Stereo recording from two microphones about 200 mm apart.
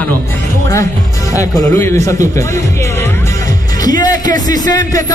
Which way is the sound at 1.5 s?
10° left (ahead or behind).